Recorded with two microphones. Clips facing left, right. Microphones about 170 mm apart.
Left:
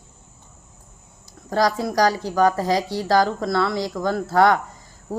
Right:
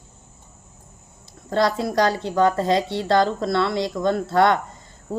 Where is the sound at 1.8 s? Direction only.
25° right (ahead or behind).